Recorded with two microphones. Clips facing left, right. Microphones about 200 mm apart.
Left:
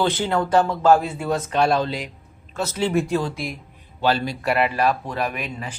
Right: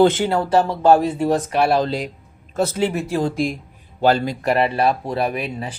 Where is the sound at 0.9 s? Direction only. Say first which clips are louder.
Right 5 dB; 35° right (ahead or behind).